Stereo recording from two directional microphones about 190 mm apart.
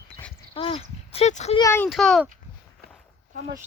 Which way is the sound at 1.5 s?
15° left (ahead or behind).